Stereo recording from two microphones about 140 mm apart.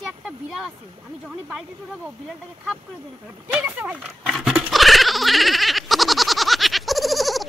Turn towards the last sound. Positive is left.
turn(degrees=0)  # may be behind; listen again after turning